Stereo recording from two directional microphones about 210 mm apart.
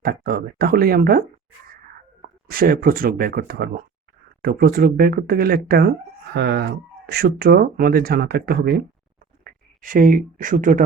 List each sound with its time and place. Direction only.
0.0 s speech: 45° right (ahead or behind)
2.5 s speech: 45° right (ahead or behind)